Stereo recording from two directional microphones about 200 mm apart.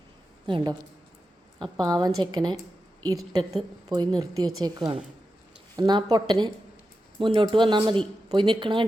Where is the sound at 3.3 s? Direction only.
20° right (ahead or behind).